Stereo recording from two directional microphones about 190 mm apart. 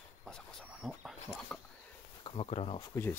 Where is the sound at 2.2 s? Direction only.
30° left (ahead or behind).